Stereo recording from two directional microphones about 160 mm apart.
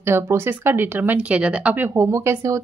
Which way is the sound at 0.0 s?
15° right (ahead or behind).